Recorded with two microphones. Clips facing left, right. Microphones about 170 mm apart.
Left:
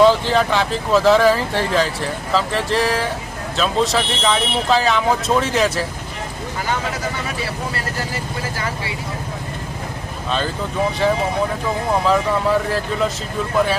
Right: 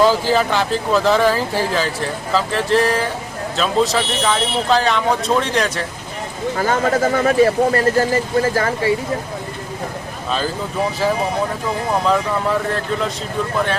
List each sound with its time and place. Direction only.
0.0 s speech: 5° right (ahead or behind)
6.6 s speech: 45° right (ahead or behind)
12.0 s speech: centre (ahead or behind)